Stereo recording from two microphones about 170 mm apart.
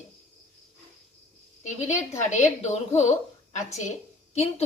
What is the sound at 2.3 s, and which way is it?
Speech, 40° left (ahead or behind).